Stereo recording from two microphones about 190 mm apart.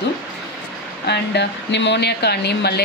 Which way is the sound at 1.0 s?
65° left (ahead or behind).